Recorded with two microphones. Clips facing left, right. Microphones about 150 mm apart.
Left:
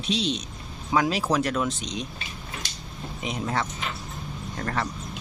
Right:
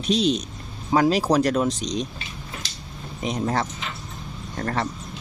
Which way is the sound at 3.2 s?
40° right (ahead or behind).